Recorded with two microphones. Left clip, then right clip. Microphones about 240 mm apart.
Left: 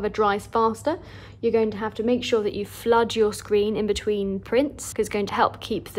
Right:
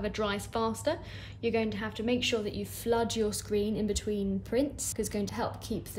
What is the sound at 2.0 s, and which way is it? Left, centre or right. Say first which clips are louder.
Speech: left 8 dB; centre.